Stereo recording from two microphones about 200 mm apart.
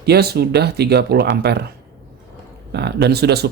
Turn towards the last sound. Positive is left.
turn(degrees=-55)  # may be behind; listen again after turning